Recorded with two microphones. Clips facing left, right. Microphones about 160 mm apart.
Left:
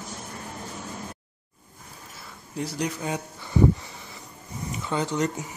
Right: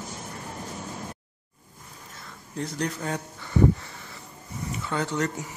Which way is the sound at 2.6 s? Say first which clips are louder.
Left 1 dB; 10° left (ahead or behind).